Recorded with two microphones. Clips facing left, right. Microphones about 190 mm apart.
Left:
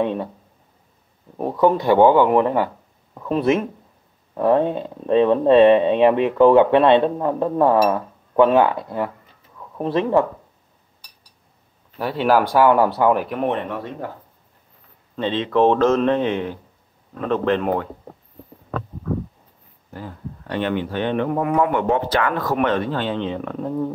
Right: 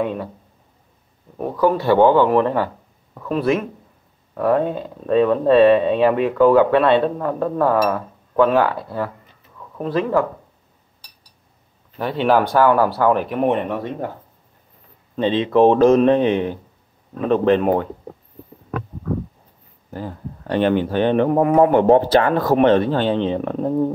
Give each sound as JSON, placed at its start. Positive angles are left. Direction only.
{"t": 0.0, "sound": "speech", "side_deg": 25}
{"t": 1.6, "sound": "speech", "side_deg": 20}
{"t": 12.0, "sound": "speech", "side_deg": 5}
{"t": 13.1, "sound": "speech", "side_deg": 5}
{"t": 13.4, "sound": "speech", "side_deg": -15}
{"t": 15.1, "sound": "speech", "side_deg": -15}
{"t": 19.9, "sound": "speech", "side_deg": -35}